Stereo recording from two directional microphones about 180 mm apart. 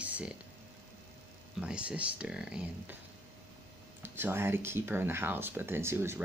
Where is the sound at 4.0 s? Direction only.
10° right (ahead or behind).